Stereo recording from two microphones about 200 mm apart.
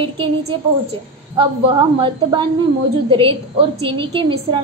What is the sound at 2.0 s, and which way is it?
Speech, 25° right (ahead or behind).